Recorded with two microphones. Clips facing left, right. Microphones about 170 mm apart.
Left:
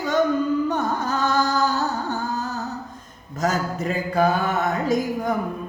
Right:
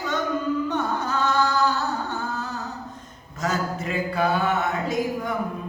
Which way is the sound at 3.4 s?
40° left (ahead or behind).